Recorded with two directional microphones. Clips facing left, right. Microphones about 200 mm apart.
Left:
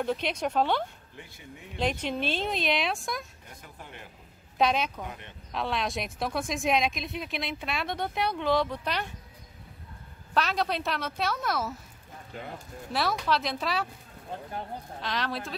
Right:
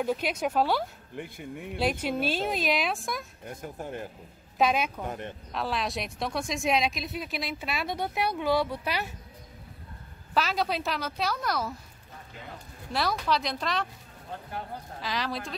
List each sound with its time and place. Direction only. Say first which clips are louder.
0.0 s speech: right 1 dB; 10° right (ahead or behind)
1.1 s speech: right 9 dB; 55° right (ahead or behind)
1.8 s speech: right 1 dB; 5° right (ahead or behind)
3.6 s speech: right 11 dB; 45° right (ahead or behind)
4.6 s speech: right 1 dB; 5° right (ahead or behind)
5.0 s speech: right 6 dB; 45° right (ahead or behind)
5.5 s speech: left 1 dB; centre (ahead or behind)
10.3 s speech: even; centre (ahead or behind)
12.9 s speech: even; centre (ahead or behind)
15.0 s speech: even; centre (ahead or behind)